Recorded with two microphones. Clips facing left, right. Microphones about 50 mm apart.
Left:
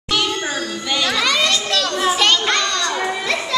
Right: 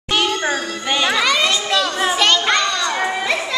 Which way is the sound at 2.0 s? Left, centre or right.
Centre.